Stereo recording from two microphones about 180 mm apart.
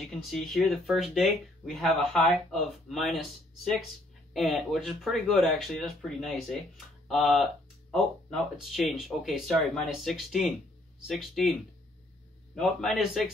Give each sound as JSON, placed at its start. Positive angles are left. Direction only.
{"t": 0.0, "sound": "speech", "side_deg": 0}
{"t": 12.5, "sound": "speech", "side_deg": 0}